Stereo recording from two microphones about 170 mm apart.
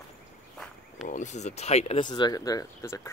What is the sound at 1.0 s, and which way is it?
Speech, 45° left (ahead or behind).